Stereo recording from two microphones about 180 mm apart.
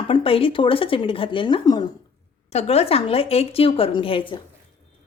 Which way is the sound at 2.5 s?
35° left (ahead or behind).